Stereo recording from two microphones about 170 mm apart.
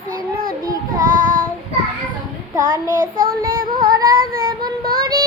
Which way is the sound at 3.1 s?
60° right (ahead or behind).